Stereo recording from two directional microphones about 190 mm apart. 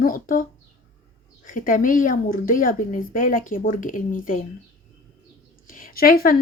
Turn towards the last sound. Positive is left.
turn(degrees=50)  # may be behind; listen again after turning